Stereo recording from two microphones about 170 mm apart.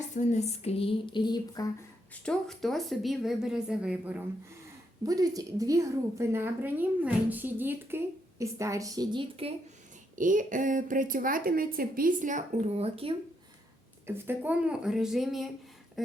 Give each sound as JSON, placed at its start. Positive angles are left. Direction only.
{"t": 0.1, "sound": "a sound", "side_deg": 45}
{"t": 2.2, "sound": "speech", "side_deg": 5}
{"t": 5.0, "sound": "a woman's voice", "side_deg": -20}
{"t": 10.2, "sound": "a woman's voice", "side_deg": -50}
{"t": 14.1, "sound": "speech", "side_deg": -10}